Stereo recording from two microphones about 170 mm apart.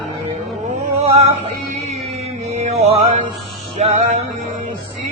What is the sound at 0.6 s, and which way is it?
Male singing, 45° right (ahead or behind).